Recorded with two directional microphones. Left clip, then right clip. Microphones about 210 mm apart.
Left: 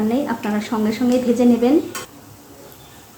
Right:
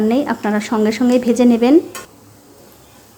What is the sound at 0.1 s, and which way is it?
Speech, 30° right (ahead or behind).